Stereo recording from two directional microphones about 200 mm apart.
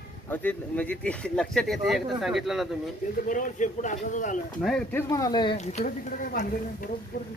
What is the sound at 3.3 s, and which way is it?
Speech, 40° left (ahead or behind).